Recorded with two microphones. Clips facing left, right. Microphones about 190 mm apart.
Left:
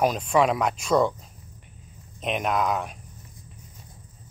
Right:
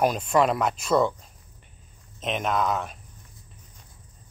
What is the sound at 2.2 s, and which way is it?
Speech, 5° left (ahead or behind).